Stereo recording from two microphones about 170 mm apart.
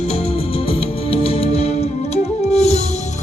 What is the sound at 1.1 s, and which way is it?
Music, 35° left (ahead or behind).